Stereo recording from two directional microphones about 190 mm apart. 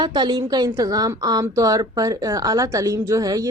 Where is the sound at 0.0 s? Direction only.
20° right (ahead or behind).